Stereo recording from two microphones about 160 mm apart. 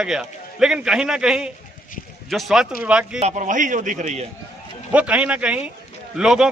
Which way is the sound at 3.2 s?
45° right (ahead or behind).